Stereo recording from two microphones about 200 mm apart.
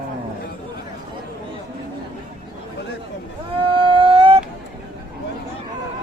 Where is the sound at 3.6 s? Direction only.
25° right (ahead or behind).